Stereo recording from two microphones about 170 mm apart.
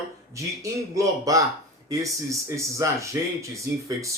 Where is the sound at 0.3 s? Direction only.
20° right (ahead or behind).